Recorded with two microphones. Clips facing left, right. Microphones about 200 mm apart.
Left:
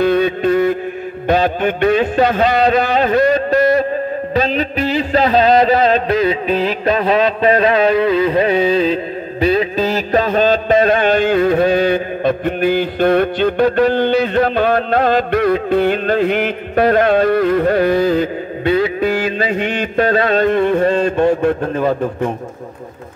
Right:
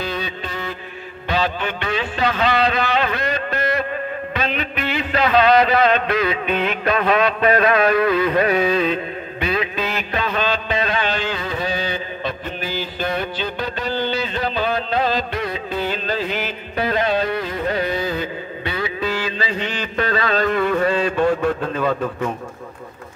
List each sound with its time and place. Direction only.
0.0 s music: 55° left (ahead or behind)
1.2 s a man's voice: 50° left (ahead or behind)
20.5 s a sound: 30° left (ahead or behind)
20.8 s a man's voice: 45° left (ahead or behind)
21.5 s a man's voice: 35° left (ahead or behind)